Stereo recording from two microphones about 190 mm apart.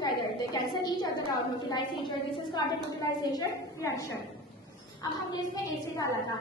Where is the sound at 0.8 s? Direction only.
20° left (ahead or behind).